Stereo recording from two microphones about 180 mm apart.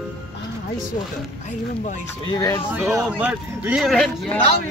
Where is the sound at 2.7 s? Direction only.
10° right (ahead or behind).